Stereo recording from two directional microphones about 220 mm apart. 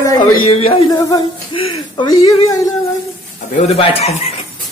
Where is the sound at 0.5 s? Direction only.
25° left (ahead or behind).